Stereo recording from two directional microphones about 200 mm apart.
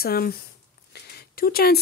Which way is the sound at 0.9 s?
50° left (ahead or behind).